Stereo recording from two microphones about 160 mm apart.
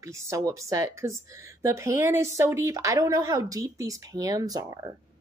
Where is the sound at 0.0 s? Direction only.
20° right (ahead or behind).